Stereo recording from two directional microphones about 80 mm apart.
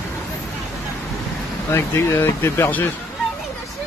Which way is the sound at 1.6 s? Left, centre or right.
Left.